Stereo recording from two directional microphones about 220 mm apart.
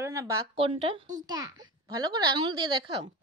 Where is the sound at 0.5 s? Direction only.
25° right (ahead or behind).